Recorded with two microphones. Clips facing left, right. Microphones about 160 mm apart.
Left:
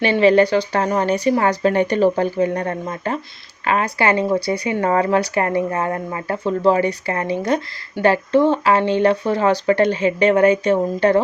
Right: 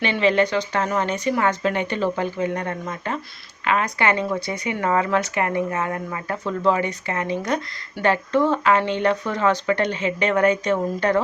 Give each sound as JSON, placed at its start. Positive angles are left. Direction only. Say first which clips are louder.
{"t": 0.0, "sound": "speech", "louder": "left 6 dB", "side_deg": 35}